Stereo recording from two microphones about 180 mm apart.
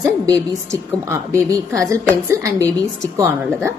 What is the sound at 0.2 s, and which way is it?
A woman's voice, 20° right (ahead or behind).